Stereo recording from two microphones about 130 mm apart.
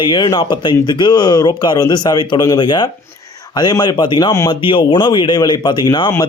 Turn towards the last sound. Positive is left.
turn(degrees=35)  # may be behind; listen again after turning